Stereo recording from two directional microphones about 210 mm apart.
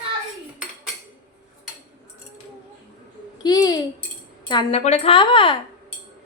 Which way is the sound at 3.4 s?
15° left (ahead or behind).